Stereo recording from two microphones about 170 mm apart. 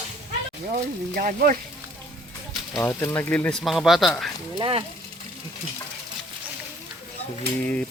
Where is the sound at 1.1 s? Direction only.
55° right (ahead or behind).